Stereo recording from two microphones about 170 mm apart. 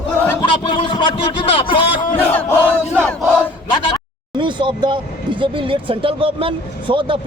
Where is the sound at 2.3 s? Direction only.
10° left (ahead or behind).